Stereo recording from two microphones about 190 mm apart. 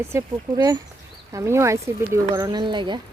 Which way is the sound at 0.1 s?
15° right (ahead or behind).